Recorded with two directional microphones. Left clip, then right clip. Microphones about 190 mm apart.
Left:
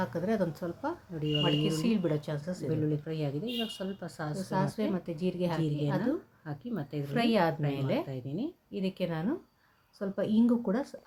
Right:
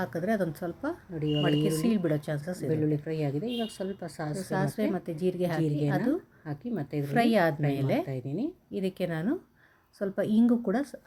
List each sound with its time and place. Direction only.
0.0 s a woman's voice: 20° right (ahead or behind)